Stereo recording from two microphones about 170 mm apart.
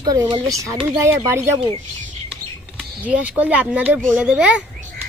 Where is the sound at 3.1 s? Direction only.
10° right (ahead or behind).